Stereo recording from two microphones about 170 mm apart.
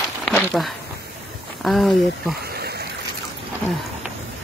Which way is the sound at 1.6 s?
Centre (ahead or behind).